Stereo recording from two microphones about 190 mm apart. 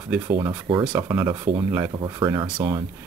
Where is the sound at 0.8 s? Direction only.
15° right (ahead or behind).